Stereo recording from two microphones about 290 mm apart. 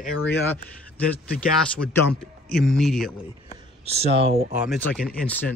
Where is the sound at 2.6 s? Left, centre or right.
Centre.